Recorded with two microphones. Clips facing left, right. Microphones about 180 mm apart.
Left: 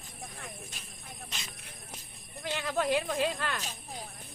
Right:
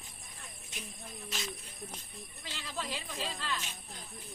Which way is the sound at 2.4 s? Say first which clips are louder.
Left 11 dB; 60° left (ahead or behind).